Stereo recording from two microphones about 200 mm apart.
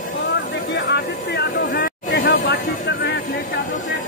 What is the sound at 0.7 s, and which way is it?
Vehicle, 60° left (ahead or behind).